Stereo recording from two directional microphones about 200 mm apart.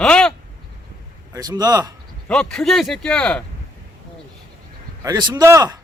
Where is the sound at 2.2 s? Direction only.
5° left (ahead or behind).